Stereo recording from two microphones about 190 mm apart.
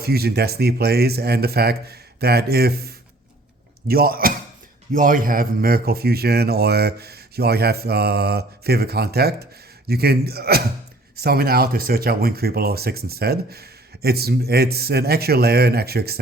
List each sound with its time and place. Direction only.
0.0 s speech: 55° right (ahead or behind)